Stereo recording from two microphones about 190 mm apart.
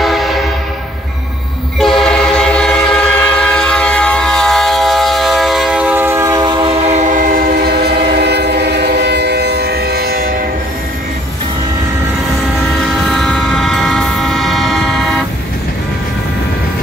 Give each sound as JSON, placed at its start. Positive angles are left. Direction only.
{"t": 0.0, "sound": "train", "side_deg": 0}
{"t": 1.8, "sound": "train", "side_deg": 0}
{"t": 6.9, "sound": "train", "side_deg": -40}
{"t": 13.1, "sound": "train", "side_deg": 5}